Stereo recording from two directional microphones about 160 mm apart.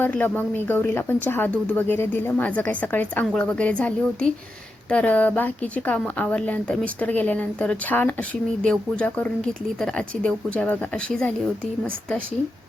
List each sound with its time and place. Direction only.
0.0 s speech: 10° left (ahead or behind)